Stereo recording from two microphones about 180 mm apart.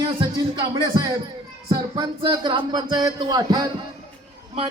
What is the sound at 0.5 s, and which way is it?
Music, 25° right (ahead or behind).